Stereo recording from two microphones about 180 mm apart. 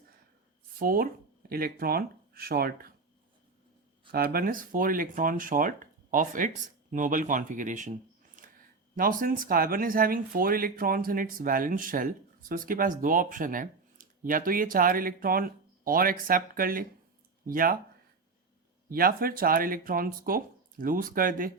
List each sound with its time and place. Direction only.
0.8 s speech: 50° right (ahead or behind)
4.1 s speech: 55° right (ahead or behind)
18.9 s speech: 55° right (ahead or behind)